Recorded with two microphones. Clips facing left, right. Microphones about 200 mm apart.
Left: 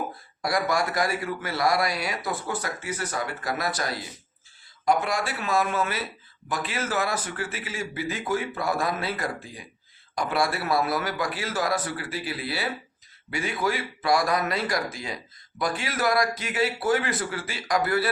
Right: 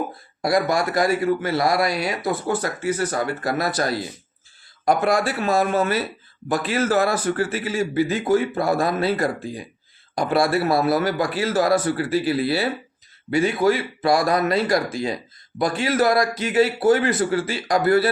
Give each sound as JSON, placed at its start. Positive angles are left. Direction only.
{"t": 0.4, "sound": "a man's voice", "side_deg": -25}
{"t": 5.1, "sound": "a man's voice", "side_deg": -35}